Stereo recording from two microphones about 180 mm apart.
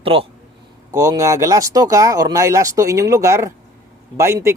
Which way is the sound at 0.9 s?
20° right (ahead or behind).